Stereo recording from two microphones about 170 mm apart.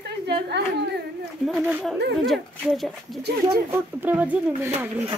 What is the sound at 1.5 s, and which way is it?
Speech, 10° right (ahead or behind).